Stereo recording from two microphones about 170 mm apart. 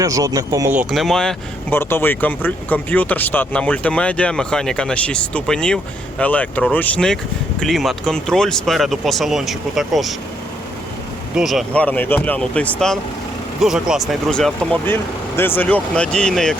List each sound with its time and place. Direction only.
0.0 s speech: 20° right (ahead or behind)
0.8 s speech: centre (ahead or behind)
1.7 s speech: 15° left (ahead or behind)
11.3 s speech: centre (ahead or behind)